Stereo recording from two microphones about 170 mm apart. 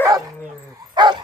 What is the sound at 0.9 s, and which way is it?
Bow-wow, 25° right (ahead or behind).